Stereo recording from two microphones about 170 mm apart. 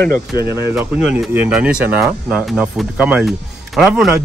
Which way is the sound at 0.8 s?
5° right (ahead or behind).